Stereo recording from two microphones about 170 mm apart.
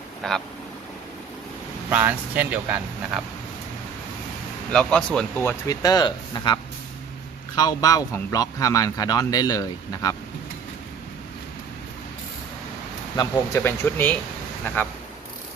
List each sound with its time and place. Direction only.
0.2 s speech: centre (ahead or behind)
1.9 s speech: 10° right (ahead or behind)
4.7 s speech: 5° left (ahead or behind)
5.4 s speech: 20° left (ahead or behind)
13.1 s speech: 25° left (ahead or behind)
13.6 s speech: 10° left (ahead or behind)